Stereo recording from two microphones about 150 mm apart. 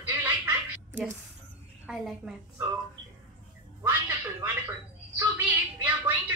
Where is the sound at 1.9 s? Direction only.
5° right (ahead or behind).